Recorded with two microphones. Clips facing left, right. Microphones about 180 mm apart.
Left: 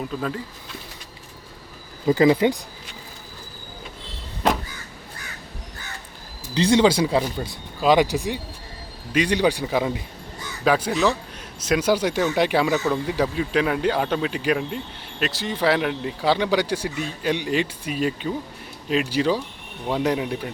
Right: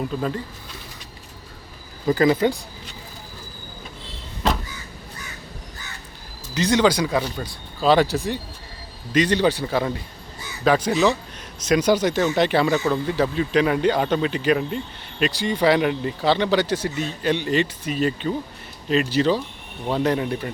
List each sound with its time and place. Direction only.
2.0 s speech: 20° left (ahead or behind)
6.5 s speech: 30° left (ahead or behind)
7.8 s speech: 15° left (ahead or behind)